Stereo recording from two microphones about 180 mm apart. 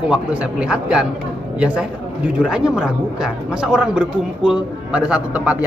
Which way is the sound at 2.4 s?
5° right (ahead or behind).